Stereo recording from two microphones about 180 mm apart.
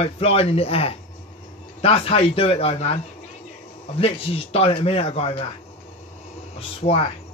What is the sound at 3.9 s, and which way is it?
Speech, 30° left (ahead or behind).